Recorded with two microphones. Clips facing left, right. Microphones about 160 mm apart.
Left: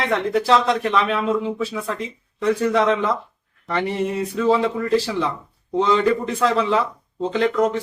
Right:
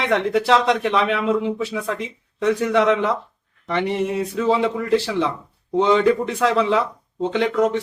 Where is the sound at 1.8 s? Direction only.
20° right (ahead or behind).